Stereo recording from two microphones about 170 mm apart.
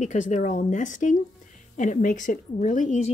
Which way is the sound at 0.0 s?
45° left (ahead or behind).